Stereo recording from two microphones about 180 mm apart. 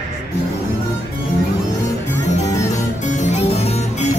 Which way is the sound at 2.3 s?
40° left (ahead or behind).